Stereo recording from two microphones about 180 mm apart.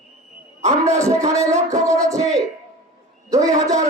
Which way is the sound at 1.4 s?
15° right (ahead or behind).